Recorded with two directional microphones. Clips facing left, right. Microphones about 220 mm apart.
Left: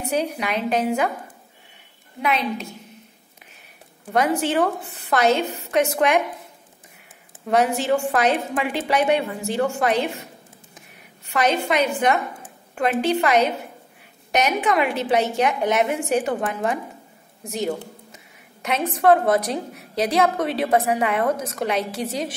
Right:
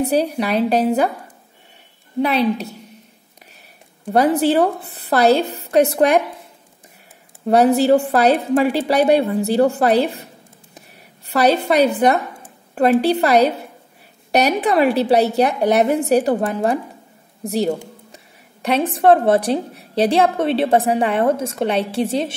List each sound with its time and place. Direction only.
0.0 s a woman's voice: 35° right (ahead or behind)
2.2 s a woman's voice: 35° right (ahead or behind)
4.1 s a woman's voice: 35° right (ahead or behind)
7.4 s a woman's voice: 35° right (ahead or behind)